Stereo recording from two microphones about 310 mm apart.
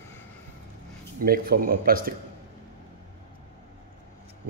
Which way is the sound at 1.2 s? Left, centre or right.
Right.